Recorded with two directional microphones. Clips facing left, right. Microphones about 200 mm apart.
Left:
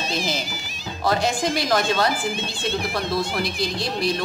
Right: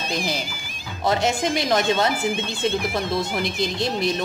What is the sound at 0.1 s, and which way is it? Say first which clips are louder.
Speech: right 3 dB; 15° right (ahead or behind).